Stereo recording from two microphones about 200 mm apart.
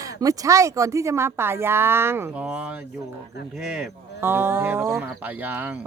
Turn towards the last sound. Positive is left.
turn(degrees=-10)  # may be behind; listen again after turning